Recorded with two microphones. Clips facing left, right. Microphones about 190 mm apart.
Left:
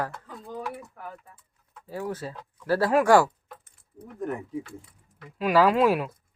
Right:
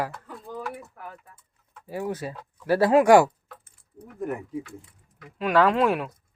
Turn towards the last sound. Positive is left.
turn(degrees=0)  # may be behind; listen again after turning